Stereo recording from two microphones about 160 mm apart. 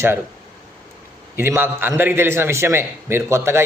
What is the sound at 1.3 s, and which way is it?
A man's voice, 15° right (ahead or behind).